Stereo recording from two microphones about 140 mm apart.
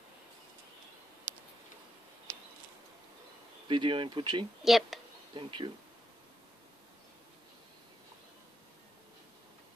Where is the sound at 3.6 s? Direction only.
35° right (ahead or behind).